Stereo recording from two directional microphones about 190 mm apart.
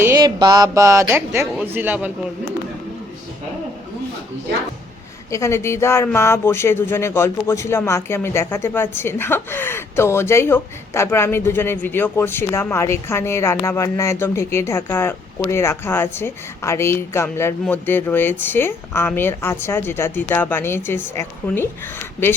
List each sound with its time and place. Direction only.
0.0 s speech: 15° right (ahead or behind)
5.3 s speech: 15° left (ahead or behind)